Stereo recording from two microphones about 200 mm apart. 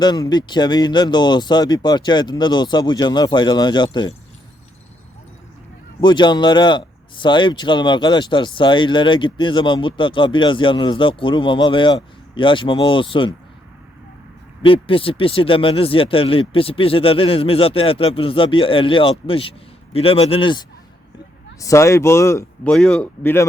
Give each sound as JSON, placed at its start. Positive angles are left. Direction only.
{"t": 0.0, "sound": "a man's voice", "side_deg": 20}
{"t": 6.0, "sound": "a man's voice", "side_deg": 20}
{"t": 14.6, "sound": "a man's voice", "side_deg": 25}
{"t": 22.7, "sound": "speech", "side_deg": 5}